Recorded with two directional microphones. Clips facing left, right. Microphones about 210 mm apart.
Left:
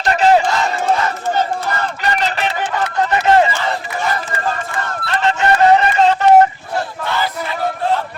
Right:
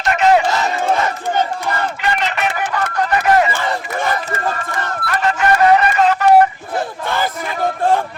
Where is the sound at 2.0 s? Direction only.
35° left (ahead or behind).